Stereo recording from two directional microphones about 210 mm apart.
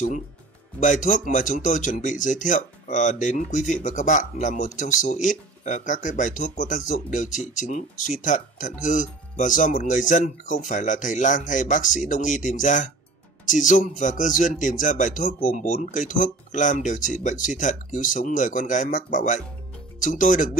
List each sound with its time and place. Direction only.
0.7 s speech: 35° left (ahead or behind)